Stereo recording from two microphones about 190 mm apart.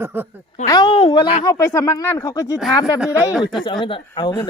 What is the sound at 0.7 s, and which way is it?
Speech, 25° left (ahead or behind).